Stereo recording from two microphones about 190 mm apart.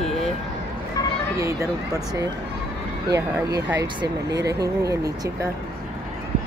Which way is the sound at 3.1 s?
15° right (ahead or behind).